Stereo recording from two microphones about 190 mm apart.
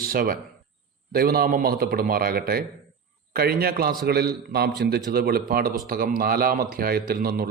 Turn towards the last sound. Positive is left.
turn(degrees=-50)  # may be behind; listen again after turning